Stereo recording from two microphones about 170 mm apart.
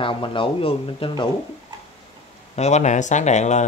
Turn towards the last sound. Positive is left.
turn(degrees=45)  # may be behind; listen again after turning